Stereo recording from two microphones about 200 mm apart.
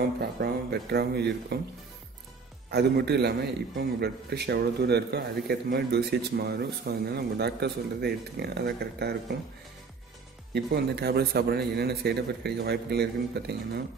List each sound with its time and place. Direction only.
0.2 s speech: 50° right (ahead or behind)
2.7 s a man's voice: 55° right (ahead or behind)
10.5 s a man's voice: 55° right (ahead or behind)